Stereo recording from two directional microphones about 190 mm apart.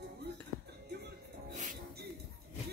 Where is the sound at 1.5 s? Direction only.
40° right (ahead or behind).